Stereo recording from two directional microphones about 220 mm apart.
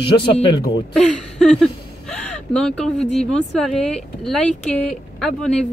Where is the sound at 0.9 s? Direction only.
Centre (ahead or behind).